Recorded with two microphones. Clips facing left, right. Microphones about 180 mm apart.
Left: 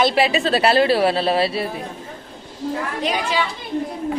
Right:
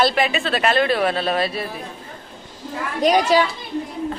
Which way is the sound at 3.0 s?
40° right (ahead or behind).